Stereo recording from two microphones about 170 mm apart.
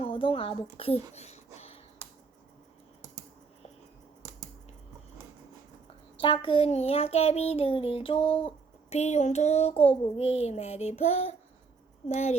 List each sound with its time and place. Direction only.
0.0 s child singing: 30° left (ahead or behind)
1.1 s a sound: 40° left (ahead or behind)
6.1 s child singing: 30° left (ahead or behind)